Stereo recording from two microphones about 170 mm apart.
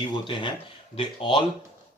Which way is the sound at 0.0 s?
30° left (ahead or behind).